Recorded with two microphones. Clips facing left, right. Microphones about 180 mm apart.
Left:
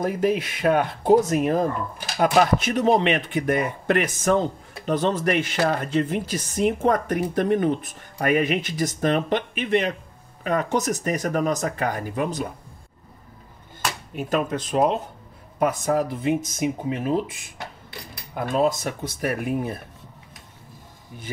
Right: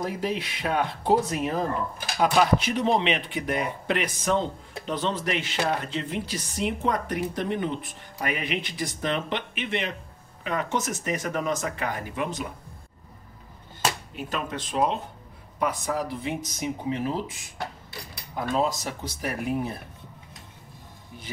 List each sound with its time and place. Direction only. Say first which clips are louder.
0.0 s speech: left 6 dB; 50° left (ahead or behind)
14.1 s speech: left 7 dB; 45° left (ahead or behind)
18.3 s speech: left 4 dB; 55° left (ahead or behind)